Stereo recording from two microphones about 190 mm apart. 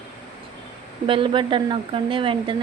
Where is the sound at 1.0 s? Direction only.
25° right (ahead or behind).